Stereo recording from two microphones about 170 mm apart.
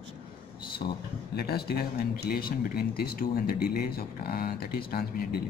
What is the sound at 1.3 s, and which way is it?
Speech, 70° left (ahead or behind).